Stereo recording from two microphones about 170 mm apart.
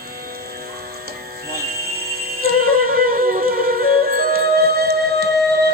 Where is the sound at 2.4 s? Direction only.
60° right (ahead or behind).